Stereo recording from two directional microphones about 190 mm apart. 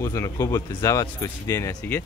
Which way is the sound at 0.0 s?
15° left (ahead or behind).